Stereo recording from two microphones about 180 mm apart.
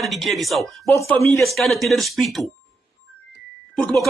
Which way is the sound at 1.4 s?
Centre (ahead or behind).